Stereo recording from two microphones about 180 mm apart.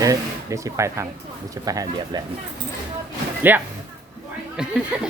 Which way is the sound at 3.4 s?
10° right (ahead or behind).